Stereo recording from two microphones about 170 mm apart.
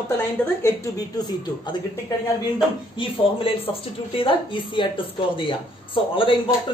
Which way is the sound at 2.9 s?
30° left (ahead or behind).